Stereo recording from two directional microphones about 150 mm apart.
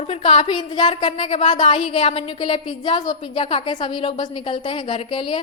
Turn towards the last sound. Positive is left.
turn(degrees=35)  # may be behind; listen again after turning